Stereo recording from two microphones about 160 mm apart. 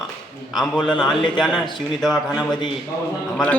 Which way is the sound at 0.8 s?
30° left (ahead or behind).